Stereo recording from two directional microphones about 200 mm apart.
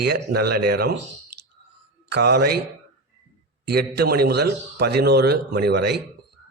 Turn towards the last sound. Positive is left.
turn(degrees=-55)  # may be behind; listen again after turning